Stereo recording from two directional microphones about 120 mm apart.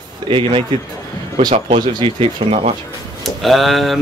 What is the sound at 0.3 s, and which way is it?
Speech, 45° right (ahead or behind).